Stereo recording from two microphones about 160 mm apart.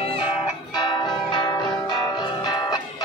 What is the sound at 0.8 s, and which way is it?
Music, 30° left (ahead or behind).